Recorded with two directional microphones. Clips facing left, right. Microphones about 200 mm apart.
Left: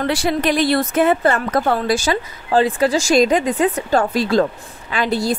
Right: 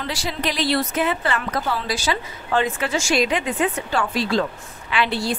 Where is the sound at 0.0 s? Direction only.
55° left (ahead or behind).